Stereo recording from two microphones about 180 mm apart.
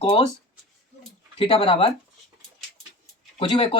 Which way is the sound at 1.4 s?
30° left (ahead or behind).